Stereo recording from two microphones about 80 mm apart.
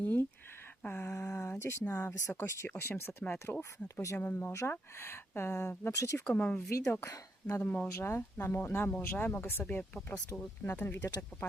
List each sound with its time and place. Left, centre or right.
0.0 s a sound: left
0.8 s speech: left
1.1 s a sound: left
1.8 s speech: left
4.3 s speech: left
6.2 s speech: centre
6.7 s speech: left